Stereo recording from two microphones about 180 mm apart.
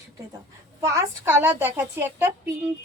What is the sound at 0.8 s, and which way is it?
A woman's voice, 15° right (ahead or behind).